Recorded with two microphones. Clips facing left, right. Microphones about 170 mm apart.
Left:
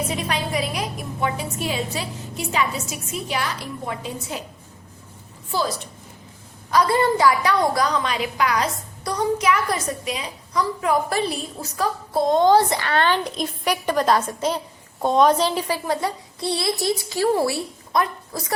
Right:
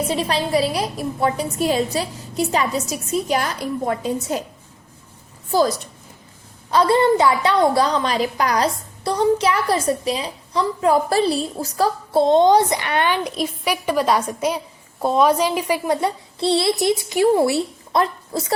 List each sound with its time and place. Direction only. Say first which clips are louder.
0.1 s a woman's voice: right 5 dB; 30° right (ahead or behind)
5.5 s a woman's voice: right 7 dB; 40° right (ahead or behind)
6.7 s a woman's voice: right 3 dB; 25° right (ahead or behind)